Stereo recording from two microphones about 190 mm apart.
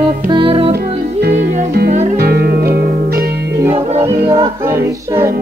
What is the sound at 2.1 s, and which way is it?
Music, 55° right (ahead or behind).